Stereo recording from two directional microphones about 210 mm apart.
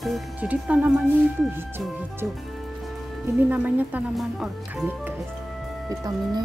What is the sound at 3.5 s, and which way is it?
Speech, 10° right (ahead or behind).